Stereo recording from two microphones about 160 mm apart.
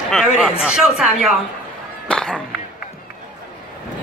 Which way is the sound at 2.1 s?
5° left (ahead or behind).